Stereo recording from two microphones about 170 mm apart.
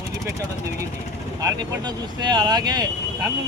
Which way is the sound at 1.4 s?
20° right (ahead or behind).